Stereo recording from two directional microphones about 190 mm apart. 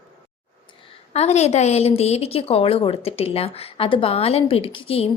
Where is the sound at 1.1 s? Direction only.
35° left (ahead or behind).